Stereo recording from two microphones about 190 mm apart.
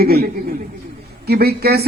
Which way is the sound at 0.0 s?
50° right (ahead or behind).